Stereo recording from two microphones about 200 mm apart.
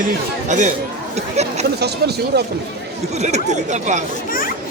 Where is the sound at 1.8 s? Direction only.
55° right (ahead or behind).